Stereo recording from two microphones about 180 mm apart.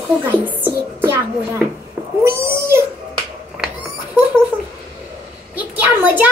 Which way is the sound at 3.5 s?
5° right (ahead or behind).